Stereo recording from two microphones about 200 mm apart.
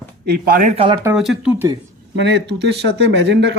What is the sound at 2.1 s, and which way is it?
Speech, 60° right (ahead or behind).